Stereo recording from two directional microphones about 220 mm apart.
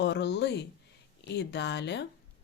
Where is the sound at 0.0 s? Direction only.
50° left (ahead or behind).